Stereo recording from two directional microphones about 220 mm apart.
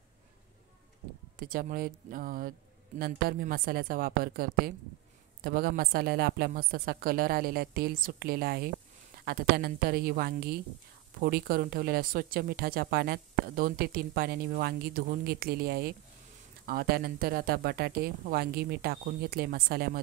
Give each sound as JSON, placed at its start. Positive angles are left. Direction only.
{"t": 1.4, "sound": "a woman's voice", "side_deg": -40}